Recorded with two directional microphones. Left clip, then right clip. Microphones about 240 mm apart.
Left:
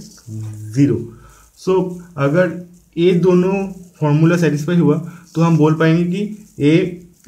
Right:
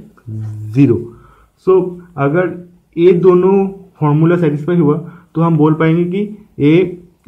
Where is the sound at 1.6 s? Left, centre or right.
Centre.